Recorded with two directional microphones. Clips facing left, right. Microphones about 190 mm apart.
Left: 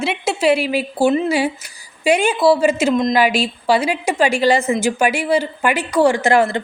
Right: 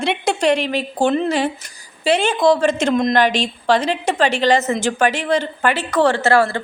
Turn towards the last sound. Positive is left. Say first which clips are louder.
# left 1 dB
turn(degrees=20)  # may be behind; listen again after turning